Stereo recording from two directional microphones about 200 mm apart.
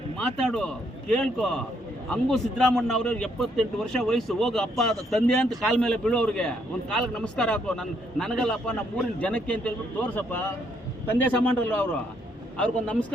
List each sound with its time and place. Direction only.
0.2 s a man's voice: 5° left (ahead or behind)